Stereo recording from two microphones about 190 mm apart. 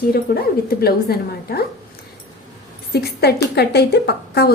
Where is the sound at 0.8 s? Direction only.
55° left (ahead or behind).